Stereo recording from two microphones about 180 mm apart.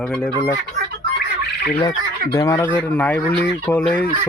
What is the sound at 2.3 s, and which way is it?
Speech, 20° left (ahead or behind).